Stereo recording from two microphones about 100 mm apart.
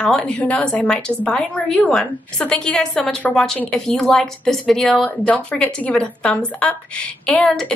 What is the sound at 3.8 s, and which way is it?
A woman's voice, 5° left (ahead or behind).